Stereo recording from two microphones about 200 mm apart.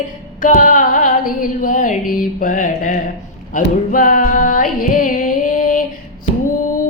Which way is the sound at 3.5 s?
45° left (ahead or behind).